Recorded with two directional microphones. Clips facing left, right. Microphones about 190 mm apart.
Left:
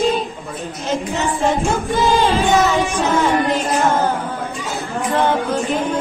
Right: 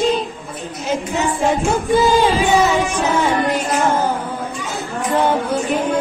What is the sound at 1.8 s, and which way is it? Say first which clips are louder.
Music: right 3 dB; 15° right (ahead or behind).